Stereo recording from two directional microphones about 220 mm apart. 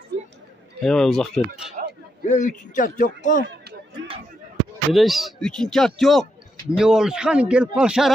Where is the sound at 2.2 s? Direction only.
35° left (ahead or behind).